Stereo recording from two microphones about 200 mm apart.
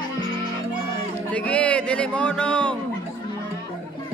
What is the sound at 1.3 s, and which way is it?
Speech, 5° left (ahead or behind).